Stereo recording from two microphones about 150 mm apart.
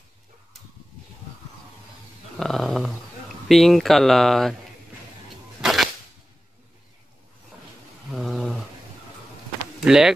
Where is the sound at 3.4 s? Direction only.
Centre (ahead or behind).